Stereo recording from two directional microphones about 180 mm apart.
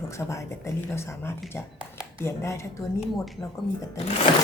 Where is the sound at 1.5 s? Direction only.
15° left (ahead or behind).